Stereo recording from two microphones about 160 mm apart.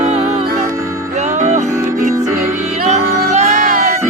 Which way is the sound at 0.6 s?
20° right (ahead or behind).